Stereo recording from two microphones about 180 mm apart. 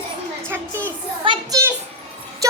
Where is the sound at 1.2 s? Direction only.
25° right (ahead or behind).